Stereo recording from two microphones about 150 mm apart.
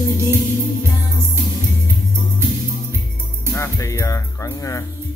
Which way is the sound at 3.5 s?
20° left (ahead or behind).